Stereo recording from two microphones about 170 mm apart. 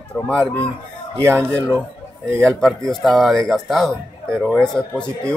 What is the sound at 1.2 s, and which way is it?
Speech, 15° right (ahead or behind).